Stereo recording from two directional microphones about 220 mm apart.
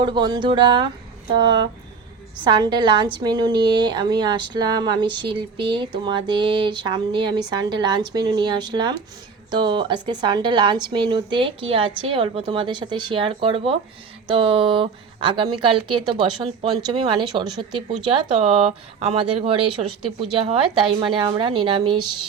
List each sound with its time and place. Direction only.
0.0 s speech: 20° right (ahead or behind)